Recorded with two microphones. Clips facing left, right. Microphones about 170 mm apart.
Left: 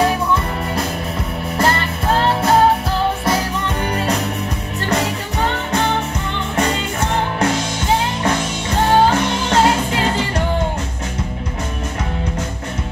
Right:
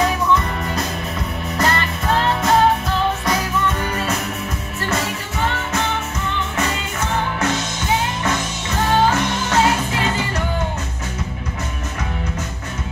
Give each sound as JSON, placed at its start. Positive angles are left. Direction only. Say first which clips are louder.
{"t": 0.0, "sound": "music", "louder": "left 1 dB", "side_deg": 30}
{"t": 5.4, "sound": "music", "louder": "left 3 dB", "side_deg": 35}
{"t": 8.9, "sound": "music", "louder": "left 3 dB", "side_deg": 30}